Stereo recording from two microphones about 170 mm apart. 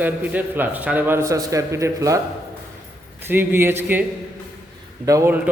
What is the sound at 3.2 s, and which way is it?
Speech, 10° right (ahead or behind).